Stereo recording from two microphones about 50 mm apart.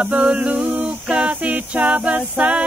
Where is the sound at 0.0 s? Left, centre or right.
Right.